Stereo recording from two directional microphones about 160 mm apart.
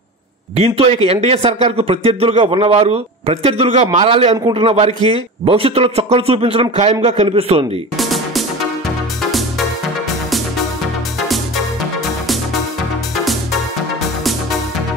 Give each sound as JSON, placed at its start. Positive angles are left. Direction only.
{"t": 0.6, "sound": "speech", "side_deg": -40}
{"t": 8.0, "sound": "music", "side_deg": 0}
{"t": 11.2, "sound": "music", "side_deg": 0}
{"t": 13.2, "sound": "music", "side_deg": 0}